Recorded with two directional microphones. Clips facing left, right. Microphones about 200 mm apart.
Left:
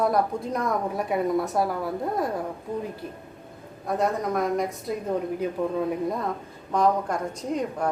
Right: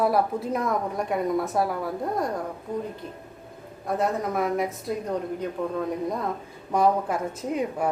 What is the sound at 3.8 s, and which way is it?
A woman's voice, centre (ahead or behind).